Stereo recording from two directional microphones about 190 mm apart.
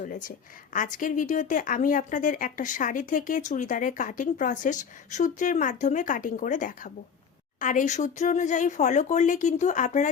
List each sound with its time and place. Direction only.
0.0 s speech: 45° left (ahead or behind)